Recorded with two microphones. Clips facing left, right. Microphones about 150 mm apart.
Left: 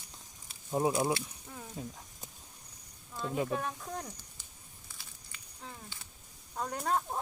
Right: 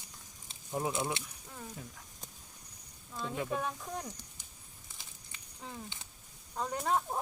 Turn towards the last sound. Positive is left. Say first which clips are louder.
# even
turn(degrees=-5)  # may be behind; listen again after turning